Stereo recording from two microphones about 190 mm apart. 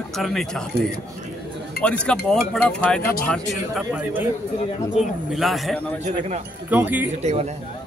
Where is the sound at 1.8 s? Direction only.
5° left (ahead or behind).